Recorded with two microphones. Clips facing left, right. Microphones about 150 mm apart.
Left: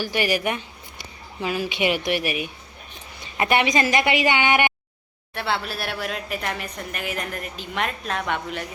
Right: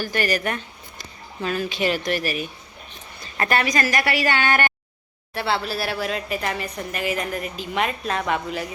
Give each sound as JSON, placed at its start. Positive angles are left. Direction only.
{"t": 0.0, "sound": "a woman's voice", "side_deg": 10}
{"t": 5.3, "sound": "a woman's voice", "side_deg": 0}